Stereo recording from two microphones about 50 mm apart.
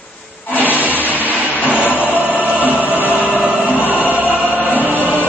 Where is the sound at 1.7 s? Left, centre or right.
Left.